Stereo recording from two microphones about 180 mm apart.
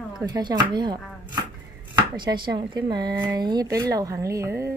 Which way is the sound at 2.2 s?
25° right (ahead or behind).